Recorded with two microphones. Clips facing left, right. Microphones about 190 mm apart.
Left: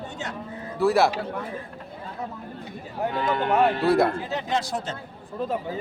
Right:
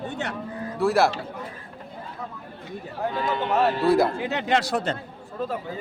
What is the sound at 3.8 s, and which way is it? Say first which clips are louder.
Speech: right 2 dB; centre (ahead or behind).